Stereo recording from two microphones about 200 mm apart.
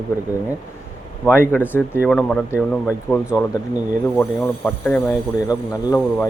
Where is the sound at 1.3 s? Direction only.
10° left (ahead or behind).